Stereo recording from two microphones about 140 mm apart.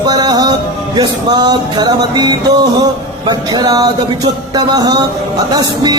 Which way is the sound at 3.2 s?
30° right (ahead or behind).